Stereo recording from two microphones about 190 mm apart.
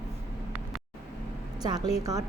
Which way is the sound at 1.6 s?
20° right (ahead or behind).